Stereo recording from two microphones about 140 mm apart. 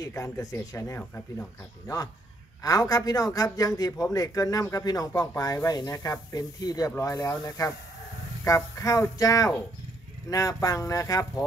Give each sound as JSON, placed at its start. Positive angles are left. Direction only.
{"t": 0.0, "sound": "a man's voice", "side_deg": 25}
{"t": 2.6, "sound": "a man's voice", "side_deg": 25}